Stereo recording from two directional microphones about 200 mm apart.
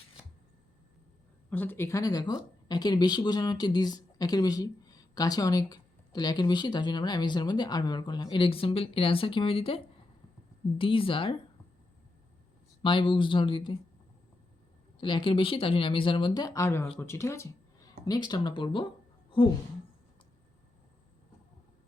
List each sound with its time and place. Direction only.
1.5 s speech: 10° left (ahead or behind); by 11.3 s 25° left (ahead or behind)
12.8 s speech: 25° left (ahead or behind)
14.9 s speech: 25° left (ahead or behind)